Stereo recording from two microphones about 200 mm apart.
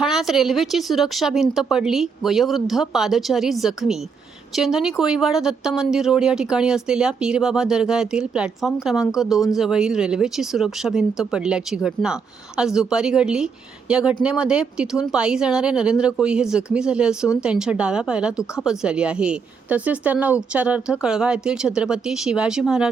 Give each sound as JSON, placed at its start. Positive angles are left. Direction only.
{"t": 0.0, "sound": "speech", "side_deg": 0}